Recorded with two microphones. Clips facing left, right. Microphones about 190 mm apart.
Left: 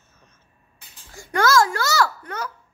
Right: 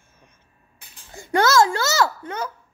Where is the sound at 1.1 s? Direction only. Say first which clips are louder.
Right 1 dB; 25° right (ahead or behind).